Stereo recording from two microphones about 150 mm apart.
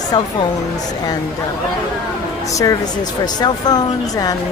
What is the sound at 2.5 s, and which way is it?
Speech, 20° left (ahead or behind).